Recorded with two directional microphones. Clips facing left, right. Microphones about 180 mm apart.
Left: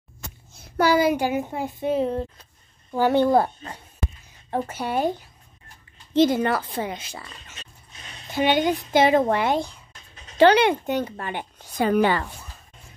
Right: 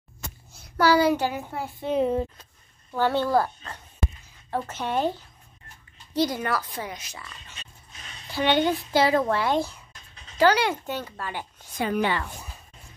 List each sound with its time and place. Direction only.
0.7 s a child's voice: 20° left (ahead or behind)
1.9 s speech: centre (ahead or behind)
2.9 s speech: 15° left (ahead or behind)
6.1 s a child's voice: 25° left (ahead or behind)
8.3 s a child's voice: 15° left (ahead or behind)
11.8 s a woman's voice: 45° left (ahead or behind)